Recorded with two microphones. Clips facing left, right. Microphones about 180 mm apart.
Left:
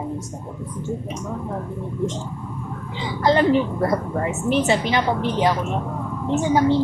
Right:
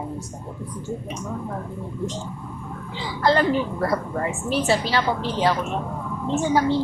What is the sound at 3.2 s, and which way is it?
A woman's voice, 20° left (ahead or behind).